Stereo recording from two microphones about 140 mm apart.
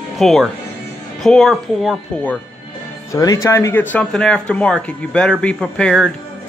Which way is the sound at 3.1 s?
25° left (ahead or behind).